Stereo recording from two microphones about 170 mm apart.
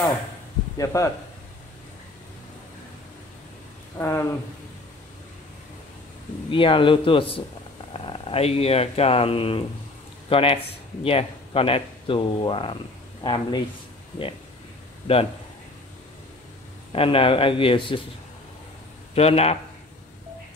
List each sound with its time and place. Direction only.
0.7 s speech: 20° left (ahead or behind)
4.0 s speech: 15° left (ahead or behind)
6.5 s speech: 30° left (ahead or behind)
16.9 s speech: 30° left (ahead or behind)
19.1 s speech: 35° left (ahead or behind)